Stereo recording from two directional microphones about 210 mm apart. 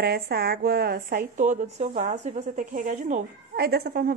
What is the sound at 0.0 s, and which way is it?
A woman's voice, 50° right (ahead or behind).